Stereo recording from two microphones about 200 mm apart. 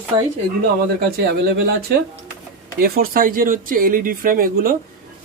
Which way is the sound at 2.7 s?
50° right (ahead or behind).